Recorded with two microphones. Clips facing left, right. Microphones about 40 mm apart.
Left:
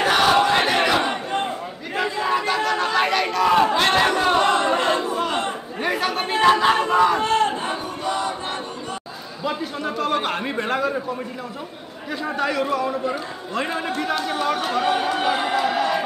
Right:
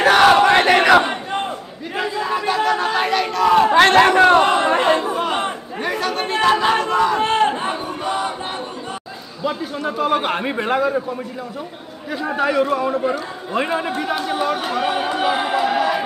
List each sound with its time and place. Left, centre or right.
0.0 s battle cry: right
1.0 s battle cry: centre
2.0 s chatter: centre
2.4 s chatter: centre
3.9 s chatter: right
4.4 s a sound: centre
4.6 s crowd: right
5.8 s chatter: centre
6.3 s a sound: centre
6.8 s crowd: centre
7.2 s battle cry: right
7.6 s battle cry: centre
9.4 s a man's voice: centre
12.1 s a man's voice: centre